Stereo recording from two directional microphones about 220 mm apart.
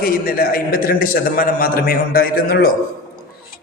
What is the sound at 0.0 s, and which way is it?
A man's voice, 45° left (ahead or behind).